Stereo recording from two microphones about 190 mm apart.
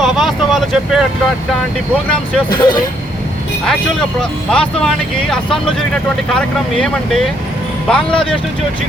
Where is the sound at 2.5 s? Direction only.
25° left (ahead or behind).